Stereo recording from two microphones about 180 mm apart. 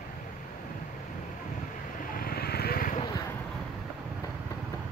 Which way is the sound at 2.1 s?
55° left (ahead or behind).